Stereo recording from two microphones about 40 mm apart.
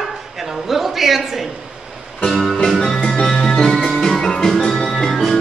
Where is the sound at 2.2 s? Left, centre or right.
Centre.